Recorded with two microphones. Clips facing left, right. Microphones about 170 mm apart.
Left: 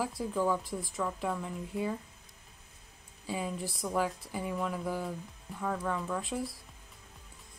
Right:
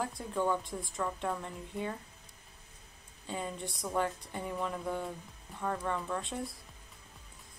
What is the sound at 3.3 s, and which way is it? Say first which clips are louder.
Speech: left 3 dB; 5° left (ahead or behind).